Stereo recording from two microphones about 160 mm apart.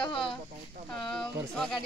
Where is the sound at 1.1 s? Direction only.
Centre (ahead or behind).